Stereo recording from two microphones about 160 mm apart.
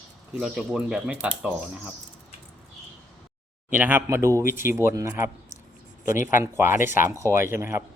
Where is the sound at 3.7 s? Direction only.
10° right (ahead or behind).